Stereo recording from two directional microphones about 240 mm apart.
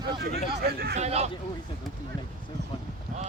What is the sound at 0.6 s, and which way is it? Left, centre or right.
Speech, right.